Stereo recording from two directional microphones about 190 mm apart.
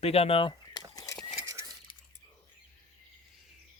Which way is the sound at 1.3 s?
15° right (ahead or behind).